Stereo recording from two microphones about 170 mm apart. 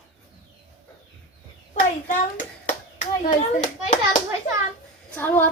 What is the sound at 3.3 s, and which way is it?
Speech, 45° left (ahead or behind).